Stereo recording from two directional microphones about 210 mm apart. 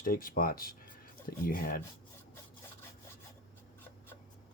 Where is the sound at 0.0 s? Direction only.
40° left (ahead or behind).